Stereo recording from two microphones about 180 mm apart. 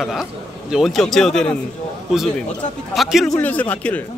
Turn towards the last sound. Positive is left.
turn(degrees=10)  # may be behind; listen again after turning